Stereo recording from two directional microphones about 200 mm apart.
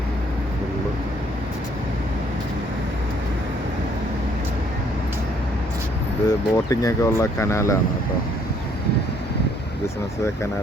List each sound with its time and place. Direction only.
6.2 s speech: 15° left (ahead or behind)